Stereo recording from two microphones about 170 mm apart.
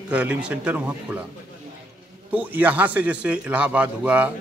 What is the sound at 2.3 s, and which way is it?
A man's voice, 10° right (ahead or behind).